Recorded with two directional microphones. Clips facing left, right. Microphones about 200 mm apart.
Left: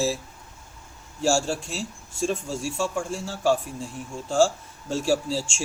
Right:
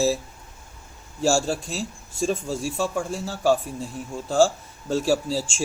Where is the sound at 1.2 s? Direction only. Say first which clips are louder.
Right 2 dB; 35° right (ahead or behind).